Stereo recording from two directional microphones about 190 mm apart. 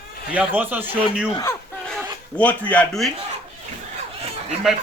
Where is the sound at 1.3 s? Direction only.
20° left (ahead or behind).